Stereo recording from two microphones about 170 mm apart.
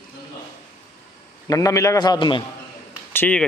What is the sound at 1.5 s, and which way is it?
Speech, 20° left (ahead or behind).